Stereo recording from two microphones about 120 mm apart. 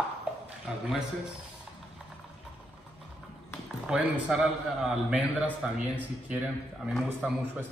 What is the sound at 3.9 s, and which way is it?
A man's voice, 10° right (ahead or behind).